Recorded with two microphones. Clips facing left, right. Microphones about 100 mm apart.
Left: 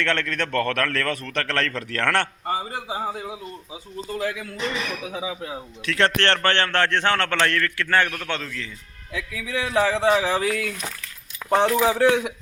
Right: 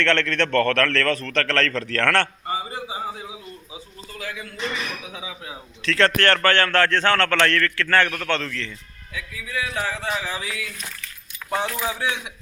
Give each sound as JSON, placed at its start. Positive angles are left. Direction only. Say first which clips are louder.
{"t": 0.0, "sound": "a man's voice", "louder": "right 3 dB", "side_deg": 10}
{"t": 2.8, "sound": "a man's voice", "louder": "left 2 dB", "side_deg": 45}
{"t": 5.8, "sound": "a man's voice", "louder": "right 2 dB", "side_deg": 15}
{"t": 9.1, "sound": "speech", "louder": "left 2 dB", "side_deg": 90}
{"t": 10.2, "sound": "speech", "louder": "left 7 dB", "side_deg": 70}
{"t": 11.4, "sound": "a man's voice", "louder": "left 7 dB", "side_deg": 65}